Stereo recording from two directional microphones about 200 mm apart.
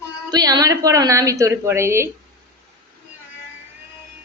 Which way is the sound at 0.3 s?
20° right (ahead or behind).